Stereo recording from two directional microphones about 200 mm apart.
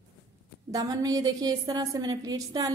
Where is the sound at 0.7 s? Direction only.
20° right (ahead or behind).